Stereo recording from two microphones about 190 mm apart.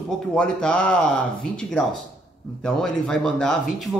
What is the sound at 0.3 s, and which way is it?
Speech, 5° left (ahead or behind).